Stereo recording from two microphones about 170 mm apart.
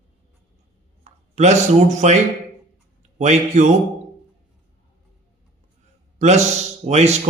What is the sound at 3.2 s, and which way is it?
Speech, 40° right (ahead or behind).